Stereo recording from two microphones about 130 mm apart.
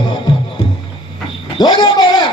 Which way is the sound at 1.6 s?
35° left (ahead or behind).